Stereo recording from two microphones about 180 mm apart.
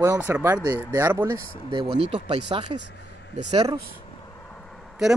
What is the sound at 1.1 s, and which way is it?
Speech, 25° right (ahead or behind).